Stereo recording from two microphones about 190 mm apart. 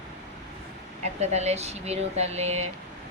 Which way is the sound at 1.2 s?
35° right (ahead or behind).